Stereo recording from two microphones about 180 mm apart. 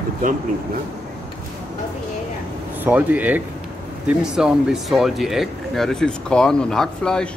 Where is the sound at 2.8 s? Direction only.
10° right (ahead or behind).